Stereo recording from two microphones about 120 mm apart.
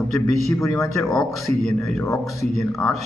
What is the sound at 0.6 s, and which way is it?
Speech, 25° left (ahead or behind).